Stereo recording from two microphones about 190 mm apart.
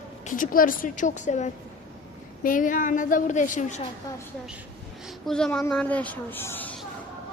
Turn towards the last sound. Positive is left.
turn(degrees=10)  # may be behind; listen again after turning